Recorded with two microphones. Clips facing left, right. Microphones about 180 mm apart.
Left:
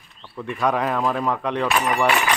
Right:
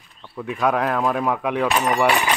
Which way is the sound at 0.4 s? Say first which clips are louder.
Right 1 dB; 5° right (ahead or behind).